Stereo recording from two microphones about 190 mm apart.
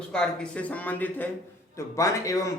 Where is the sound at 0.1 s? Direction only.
5° left (ahead or behind).